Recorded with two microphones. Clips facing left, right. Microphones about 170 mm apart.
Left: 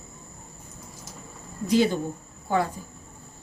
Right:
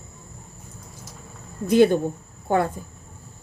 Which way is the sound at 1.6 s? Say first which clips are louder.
Right 5 dB; 55° right (ahead or behind).